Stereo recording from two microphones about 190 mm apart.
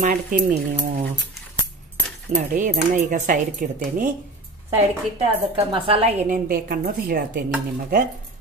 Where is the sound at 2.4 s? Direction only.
40° right (ahead or behind).